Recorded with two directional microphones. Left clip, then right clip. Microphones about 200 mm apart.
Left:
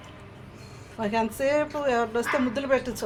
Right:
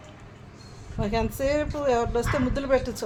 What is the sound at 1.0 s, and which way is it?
A woman's voice, 15° right (ahead or behind).